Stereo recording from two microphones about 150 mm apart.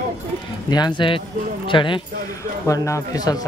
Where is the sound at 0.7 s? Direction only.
30° left (ahead or behind).